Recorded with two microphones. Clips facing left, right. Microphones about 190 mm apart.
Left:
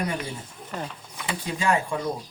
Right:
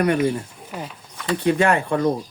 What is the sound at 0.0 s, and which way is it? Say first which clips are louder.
Speech: right 11 dB; 65° right (ahead or behind).